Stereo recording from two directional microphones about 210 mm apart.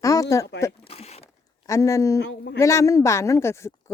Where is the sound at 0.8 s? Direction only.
30° left (ahead or behind).